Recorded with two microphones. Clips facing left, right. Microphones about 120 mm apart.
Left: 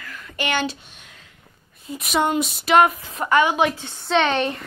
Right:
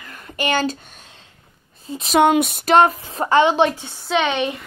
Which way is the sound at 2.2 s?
65° right (ahead or behind).